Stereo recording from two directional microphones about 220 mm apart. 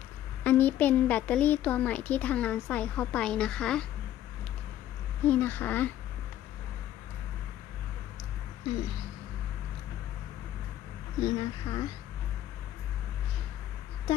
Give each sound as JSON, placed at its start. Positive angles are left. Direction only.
{"t": 0.4, "sound": "speech", "side_deg": 5}
{"t": 5.2, "sound": "speech", "side_deg": 10}
{"t": 11.3, "sound": "speech", "side_deg": 20}